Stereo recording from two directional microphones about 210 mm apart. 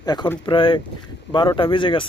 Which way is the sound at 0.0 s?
20° left (ahead or behind).